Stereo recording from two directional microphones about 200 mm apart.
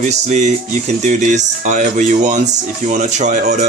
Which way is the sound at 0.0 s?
35° right (ahead or behind).